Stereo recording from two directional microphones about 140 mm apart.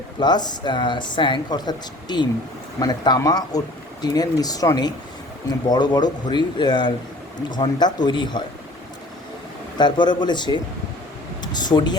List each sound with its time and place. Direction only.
0.2 s speech: 30° left (ahead or behind)
9.7 s speech: 30° left (ahead or behind)